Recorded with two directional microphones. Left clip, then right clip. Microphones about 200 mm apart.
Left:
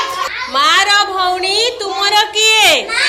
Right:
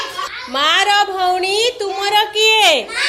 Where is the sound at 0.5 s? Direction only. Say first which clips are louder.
Left 3 dB; 40° right (ahead or behind).